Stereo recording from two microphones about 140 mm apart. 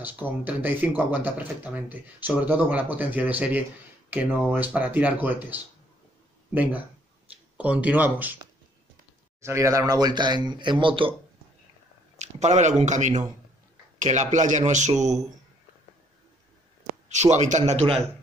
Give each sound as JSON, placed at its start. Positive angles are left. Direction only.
{"t": 0.0, "sound": "speech", "side_deg": -10}
{"t": 9.4, "sound": "speech", "side_deg": -20}
{"t": 12.2, "sound": "a man's voice", "side_deg": -55}
{"t": 17.1, "sound": "a man's voice", "side_deg": -55}